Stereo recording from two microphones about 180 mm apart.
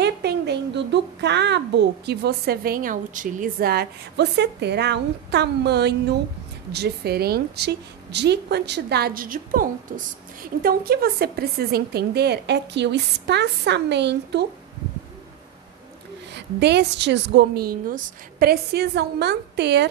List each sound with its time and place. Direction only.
0.0 s a child's voice: 70° right (ahead or behind)
16.3 s a child's voice: 70° right (ahead or behind)